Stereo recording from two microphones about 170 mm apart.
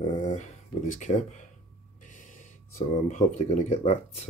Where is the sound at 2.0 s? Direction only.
50° left (ahead or behind).